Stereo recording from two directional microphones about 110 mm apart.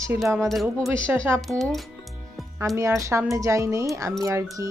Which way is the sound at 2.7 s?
25° right (ahead or behind).